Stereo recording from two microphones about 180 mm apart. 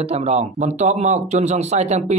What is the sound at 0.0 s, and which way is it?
Speech, 35° right (ahead or behind).